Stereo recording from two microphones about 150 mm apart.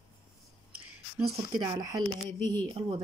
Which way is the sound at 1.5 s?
25° right (ahead or behind).